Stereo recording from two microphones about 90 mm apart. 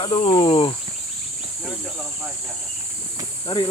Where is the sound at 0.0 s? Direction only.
70° left (ahead or behind).